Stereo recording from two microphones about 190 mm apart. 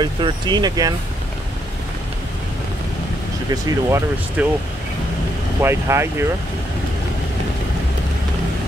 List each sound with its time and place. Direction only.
0.0 s speech: 25° right (ahead or behind)
3.6 s speech: 15° right (ahead or behind)
5.6 s speech: 15° right (ahead or behind)